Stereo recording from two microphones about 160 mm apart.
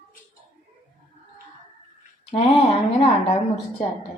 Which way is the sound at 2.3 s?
35° left (ahead or behind).